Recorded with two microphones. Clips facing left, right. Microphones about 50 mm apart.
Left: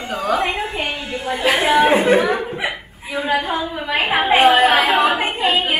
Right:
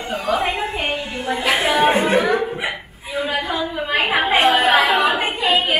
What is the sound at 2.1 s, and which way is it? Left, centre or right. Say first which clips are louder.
Chuckle: even; left.